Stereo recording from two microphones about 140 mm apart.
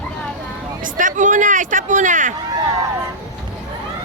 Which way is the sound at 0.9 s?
70° right (ahead or behind).